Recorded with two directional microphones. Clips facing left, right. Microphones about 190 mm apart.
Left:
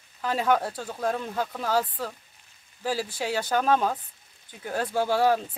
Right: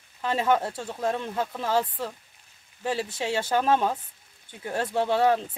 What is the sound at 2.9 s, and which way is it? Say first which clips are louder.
Speech: right 1 dB; 25° right (ahead or behind).